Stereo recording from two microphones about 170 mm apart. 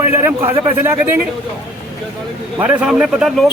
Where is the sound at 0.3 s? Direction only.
10° right (ahead or behind).